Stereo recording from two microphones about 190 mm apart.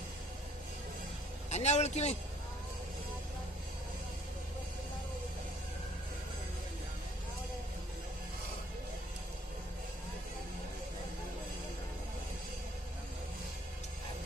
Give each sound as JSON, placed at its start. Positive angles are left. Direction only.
{"t": 1.5, "sound": "a man's voice", "side_deg": 35}